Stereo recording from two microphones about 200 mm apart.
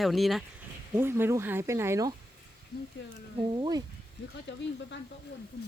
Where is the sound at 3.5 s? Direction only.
20° right (ahead or behind).